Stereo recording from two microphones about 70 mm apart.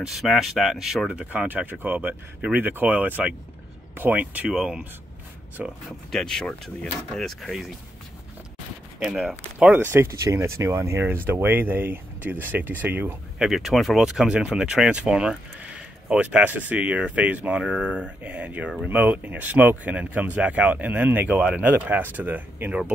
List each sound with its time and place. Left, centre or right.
0.0 s speech: centre
1.1 s speech: right
4.5 s speech: centre
5.9 s speech: centre
9.0 s speech: centre
9.8 s speech: right
13.4 s speech: centre; by 22.8 s right